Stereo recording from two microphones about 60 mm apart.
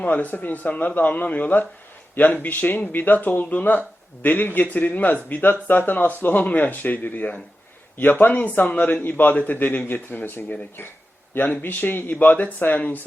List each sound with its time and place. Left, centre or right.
0.0 s speech: left